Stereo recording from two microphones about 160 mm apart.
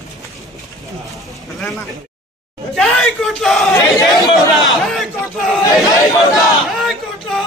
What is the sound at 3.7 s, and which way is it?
Speech, 20° left (ahead or behind).